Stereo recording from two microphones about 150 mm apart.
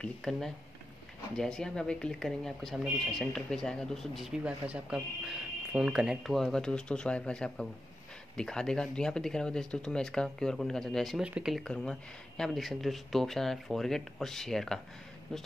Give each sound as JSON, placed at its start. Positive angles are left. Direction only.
{"t": 0.0, "sound": "speech", "side_deg": 5}